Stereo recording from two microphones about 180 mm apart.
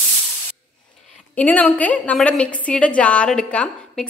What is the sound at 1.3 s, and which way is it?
A woman's voice, 10° left (ahead or behind).